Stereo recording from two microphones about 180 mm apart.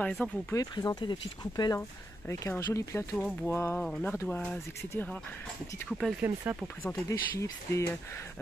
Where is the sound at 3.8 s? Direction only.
Centre (ahead or behind).